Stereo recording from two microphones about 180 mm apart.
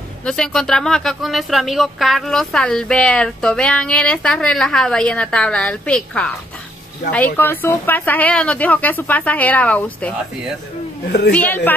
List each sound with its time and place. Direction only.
0.2 s speech: 5° left (ahead or behind)
7.3 s a woman's voice: 10° left (ahead or behind)
11.1 s a woman's voice: 65° left (ahead or behind)
11.3 s a woman's voice: 10° left (ahead or behind)